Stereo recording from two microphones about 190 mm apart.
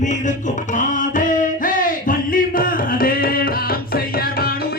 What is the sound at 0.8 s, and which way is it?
Music, 45° left (ahead or behind).